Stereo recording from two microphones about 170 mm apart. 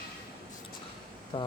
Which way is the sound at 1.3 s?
30° left (ahead or behind).